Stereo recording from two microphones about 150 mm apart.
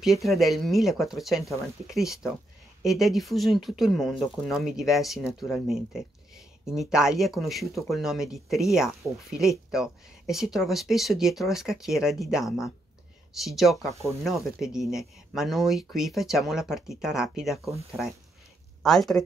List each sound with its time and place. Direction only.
0.0 s speech: centre (ahead or behind)
18.8 s speech: 5° left (ahead or behind)